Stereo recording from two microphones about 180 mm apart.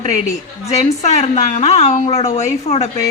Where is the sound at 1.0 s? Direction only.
40° left (ahead or behind).